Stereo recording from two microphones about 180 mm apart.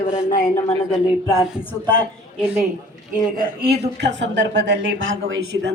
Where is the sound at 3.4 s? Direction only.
55° right (ahead or behind).